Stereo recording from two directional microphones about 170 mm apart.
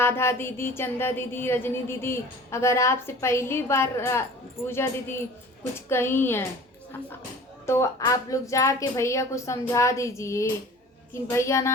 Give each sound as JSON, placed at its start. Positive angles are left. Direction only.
{"t": 0.0, "sound": "a woman's voice", "side_deg": 15}
{"t": 7.7, "sound": "a woman's voice", "side_deg": 20}